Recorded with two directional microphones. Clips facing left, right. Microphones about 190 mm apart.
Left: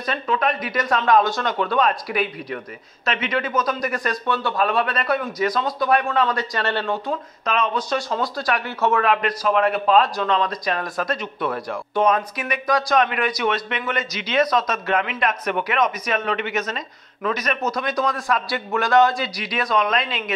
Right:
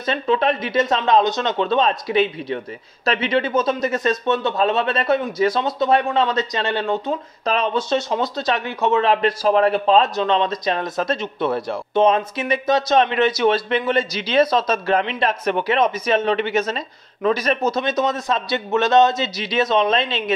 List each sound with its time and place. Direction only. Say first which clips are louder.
0.0 s speech: right 4 dB; 25° right (ahead or behind)
7.4 s speech: right 2 dB; 30° right (ahead or behind)
9.1 s speech: right 3 dB; 30° right (ahead or behind)